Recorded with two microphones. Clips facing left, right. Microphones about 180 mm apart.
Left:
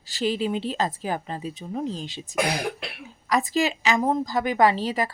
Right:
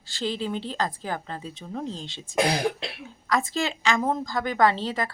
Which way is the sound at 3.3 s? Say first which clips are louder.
Left 3 dB; 15° left (ahead or behind).